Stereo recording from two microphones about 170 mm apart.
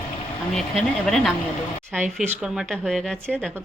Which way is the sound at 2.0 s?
45° right (ahead or behind).